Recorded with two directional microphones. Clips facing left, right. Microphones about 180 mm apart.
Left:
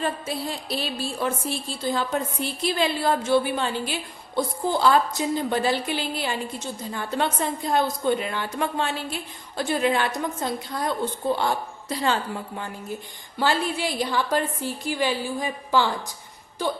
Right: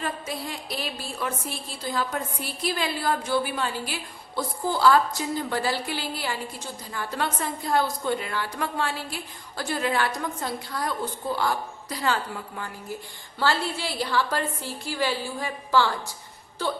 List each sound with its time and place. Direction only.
0.0 s a woman's voice: 30° left (ahead or behind)